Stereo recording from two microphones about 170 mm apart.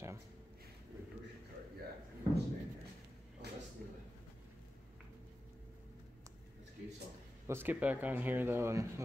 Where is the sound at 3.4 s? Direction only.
75° right (ahead or behind).